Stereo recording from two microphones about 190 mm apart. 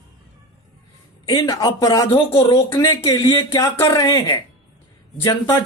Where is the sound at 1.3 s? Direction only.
20° left (ahead or behind).